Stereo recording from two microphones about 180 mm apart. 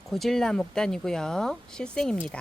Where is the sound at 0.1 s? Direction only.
Centre (ahead or behind).